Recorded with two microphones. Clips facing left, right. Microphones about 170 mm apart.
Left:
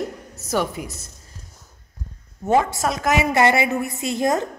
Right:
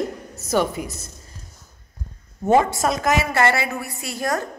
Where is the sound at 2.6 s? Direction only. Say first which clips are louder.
Right 2 dB; 5° left (ahead or behind).